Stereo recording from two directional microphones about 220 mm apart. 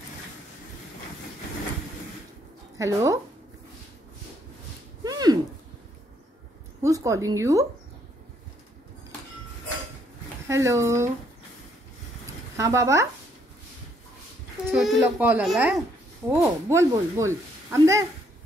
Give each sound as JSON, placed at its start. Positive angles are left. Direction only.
{"t": 2.8, "sound": "speech", "side_deg": -15}
{"t": 5.0, "sound": "a sound", "side_deg": -15}
{"t": 6.8, "sound": "a woman's voice", "side_deg": -15}
{"t": 10.5, "sound": "speech", "side_deg": -15}
{"t": 12.5, "sound": "speech", "side_deg": -15}
{"t": 14.7, "sound": "speech", "side_deg": -5}